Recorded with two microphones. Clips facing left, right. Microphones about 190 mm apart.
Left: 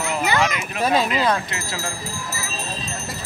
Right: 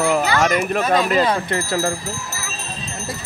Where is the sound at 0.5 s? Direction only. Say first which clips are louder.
Right 3 dB; 45° right (ahead or behind).